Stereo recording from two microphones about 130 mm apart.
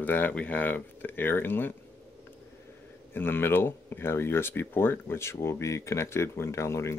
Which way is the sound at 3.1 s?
15° left (ahead or behind).